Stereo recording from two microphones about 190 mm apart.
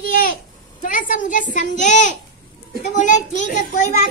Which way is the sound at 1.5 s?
40° left (ahead or behind).